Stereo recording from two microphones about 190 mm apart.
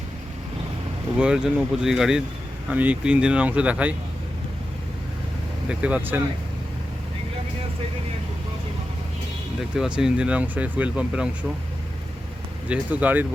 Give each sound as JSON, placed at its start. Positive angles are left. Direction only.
{"t": 1.2, "sound": "speech", "side_deg": -5}
{"t": 5.6, "sound": "speech", "side_deg": -5}
{"t": 9.6, "sound": "speech", "side_deg": -5}
{"t": 12.6, "sound": "speech", "side_deg": -5}